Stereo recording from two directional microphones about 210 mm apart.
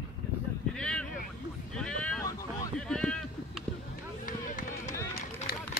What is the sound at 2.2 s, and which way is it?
Boat, 15° left (ahead or behind).